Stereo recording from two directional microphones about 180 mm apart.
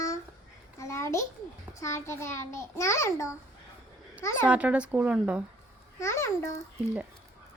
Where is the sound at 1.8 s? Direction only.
15° left (ahead or behind).